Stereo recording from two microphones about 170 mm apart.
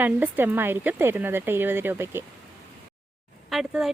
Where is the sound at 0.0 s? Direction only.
10° right (ahead or behind).